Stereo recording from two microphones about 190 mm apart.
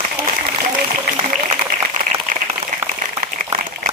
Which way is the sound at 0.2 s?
55° right (ahead or behind).